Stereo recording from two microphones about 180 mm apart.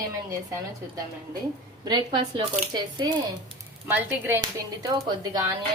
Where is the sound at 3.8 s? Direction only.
10° right (ahead or behind).